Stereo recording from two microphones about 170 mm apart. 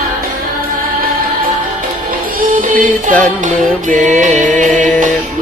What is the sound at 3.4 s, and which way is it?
Music, 50° right (ahead or behind).